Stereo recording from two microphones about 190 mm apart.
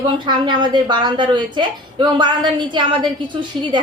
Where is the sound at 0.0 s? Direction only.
25° right (ahead or behind).